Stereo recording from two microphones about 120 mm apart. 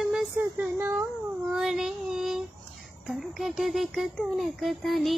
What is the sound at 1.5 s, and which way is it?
Child singing, 5° right (ahead or behind).